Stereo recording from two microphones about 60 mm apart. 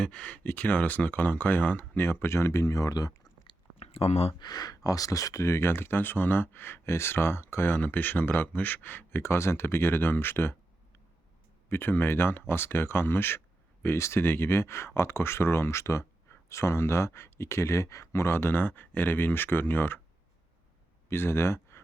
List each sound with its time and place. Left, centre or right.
0.0 s speech: centre
0.4 s speech: left
4.5 s speech: left
11.7 s speech: left
21.1 s speech: left